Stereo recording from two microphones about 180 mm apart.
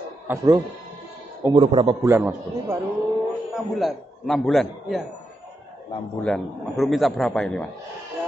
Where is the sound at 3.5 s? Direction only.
Centre (ahead or behind).